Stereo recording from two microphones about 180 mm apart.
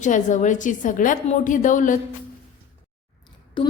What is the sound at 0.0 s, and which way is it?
A woman's voice, 45° left (ahead or behind).